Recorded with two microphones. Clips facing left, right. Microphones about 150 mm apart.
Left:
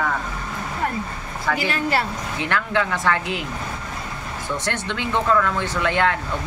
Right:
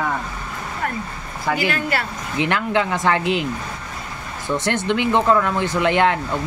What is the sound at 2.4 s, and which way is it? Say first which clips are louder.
Speech: right 3 dB; 20° right (ahead or behind).